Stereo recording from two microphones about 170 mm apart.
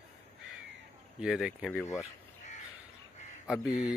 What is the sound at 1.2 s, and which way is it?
Speech, 5° right (ahead or behind).